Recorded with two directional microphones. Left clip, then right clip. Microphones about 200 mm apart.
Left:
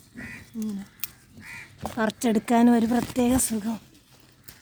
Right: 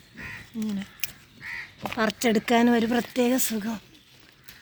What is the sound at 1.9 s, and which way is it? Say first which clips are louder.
Speech: right 1 dB; 20° left (ahead or behind).